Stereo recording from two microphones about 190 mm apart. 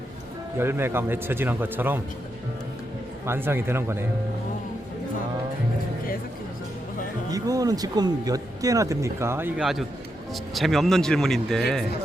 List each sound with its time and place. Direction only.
0.6 s speech: 10° right (ahead or behind)
3.2 s speech: 10° right (ahead or behind)
7.3 s a man's voice: 20° right (ahead or behind); by 11.6 s centre (ahead or behind)